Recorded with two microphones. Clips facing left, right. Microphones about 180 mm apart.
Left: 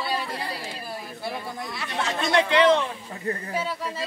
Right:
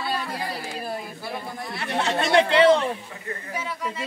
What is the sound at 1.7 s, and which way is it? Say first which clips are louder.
Speech: right 5 dB; 60° right (ahead or behind).